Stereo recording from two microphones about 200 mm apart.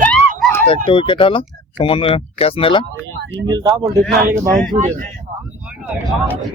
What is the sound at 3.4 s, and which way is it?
Speech, 20° right (ahead or behind).